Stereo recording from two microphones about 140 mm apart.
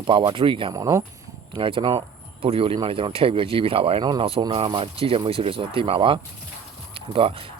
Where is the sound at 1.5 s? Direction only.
40° right (ahead or behind).